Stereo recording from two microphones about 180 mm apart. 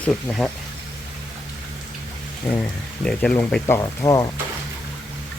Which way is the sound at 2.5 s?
15° left (ahead or behind).